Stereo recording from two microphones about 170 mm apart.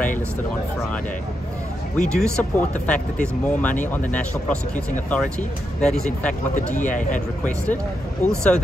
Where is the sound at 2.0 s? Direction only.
5° left (ahead or behind).